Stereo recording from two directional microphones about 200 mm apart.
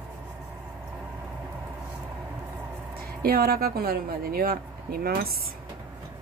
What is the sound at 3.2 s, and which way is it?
A woman's voice, 50° right (ahead or behind).